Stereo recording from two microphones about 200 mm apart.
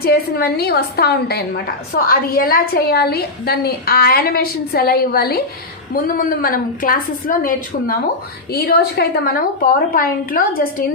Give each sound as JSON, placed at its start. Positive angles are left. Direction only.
{"t": 0.0, "sound": "a woman's voice", "side_deg": 50}